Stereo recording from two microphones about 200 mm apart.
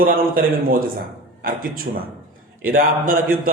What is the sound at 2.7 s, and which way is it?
Speech, 45° right (ahead or behind).